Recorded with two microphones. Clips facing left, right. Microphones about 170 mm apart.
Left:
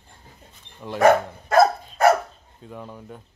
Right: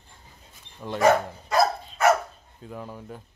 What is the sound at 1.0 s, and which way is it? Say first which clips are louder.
Speech: left 3 dB; 55° left (ahead or behind).